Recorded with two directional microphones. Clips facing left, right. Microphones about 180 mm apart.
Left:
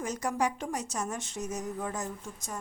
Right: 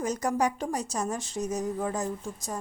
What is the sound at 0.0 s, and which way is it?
A woman's voice, 40° right (ahead or behind).